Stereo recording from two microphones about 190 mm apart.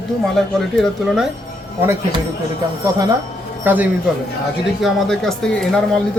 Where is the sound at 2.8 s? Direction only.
20° right (ahead or behind).